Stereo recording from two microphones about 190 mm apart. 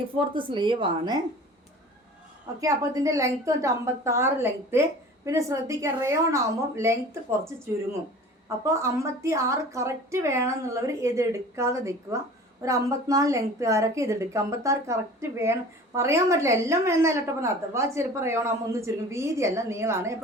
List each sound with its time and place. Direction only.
0.2 s a woman's voice: 25° right (ahead or behind)
2.6 s a woman's voice: 15° right (ahead or behind)
8.4 s a woman's voice: 15° right (ahead or behind)